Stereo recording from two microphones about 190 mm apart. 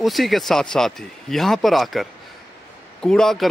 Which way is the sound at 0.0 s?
Centre (ahead or behind).